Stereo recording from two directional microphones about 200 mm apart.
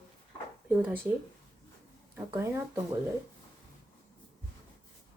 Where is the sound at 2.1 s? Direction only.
10° right (ahead or behind).